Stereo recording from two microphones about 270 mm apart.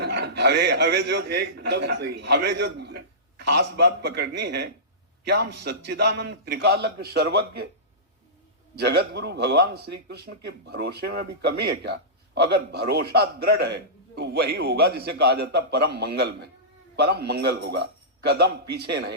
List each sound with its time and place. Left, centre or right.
0.0 s speech: right
8.7 s speech: right